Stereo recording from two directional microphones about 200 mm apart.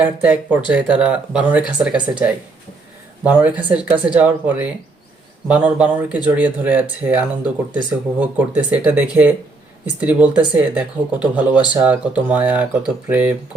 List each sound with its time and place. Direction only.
0.0 s speech: 10° right (ahead or behind)